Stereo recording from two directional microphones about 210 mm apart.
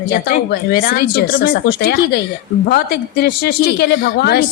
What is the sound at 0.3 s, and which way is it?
A man's voice, 45° left (ahead or behind).